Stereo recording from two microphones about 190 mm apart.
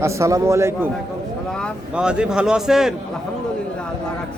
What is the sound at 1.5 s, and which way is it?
Speech, 5° left (ahead or behind).